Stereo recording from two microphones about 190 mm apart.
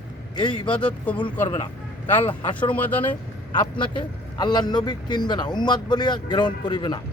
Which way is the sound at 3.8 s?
25° left (ahead or behind).